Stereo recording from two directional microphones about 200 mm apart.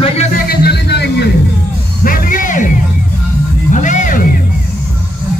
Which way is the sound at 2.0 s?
45° left (ahead or behind).